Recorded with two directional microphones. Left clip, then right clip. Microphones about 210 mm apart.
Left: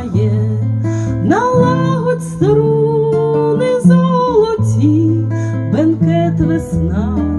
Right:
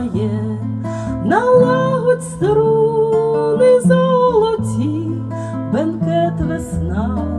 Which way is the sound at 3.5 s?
50° left (ahead or behind).